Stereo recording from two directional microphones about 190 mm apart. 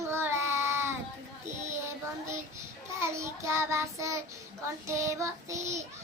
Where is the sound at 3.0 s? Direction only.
15° right (ahead or behind).